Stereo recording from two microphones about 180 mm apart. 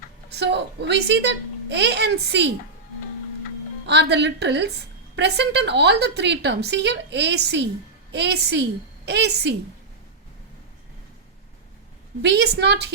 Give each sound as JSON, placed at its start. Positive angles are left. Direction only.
{"t": 0.3, "sound": "a woman's voice", "side_deg": -70}
{"t": 3.8, "sound": "a woman's voice", "side_deg": -70}
{"t": 12.2, "sound": "a woman's voice", "side_deg": -70}